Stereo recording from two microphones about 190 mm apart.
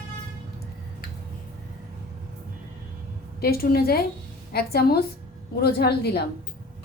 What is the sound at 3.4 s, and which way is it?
A woman's voice, 55° left (ahead or behind).